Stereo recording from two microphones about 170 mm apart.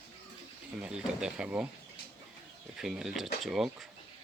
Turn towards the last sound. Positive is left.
turn(degrees=0)  # may be behind; listen again after turning